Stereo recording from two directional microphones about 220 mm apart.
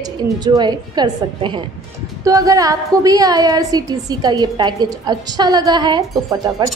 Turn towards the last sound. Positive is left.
turn(degrees=-15)  # may be behind; listen again after turning